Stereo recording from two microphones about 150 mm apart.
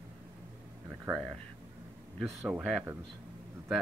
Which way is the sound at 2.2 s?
5° right (ahead or behind).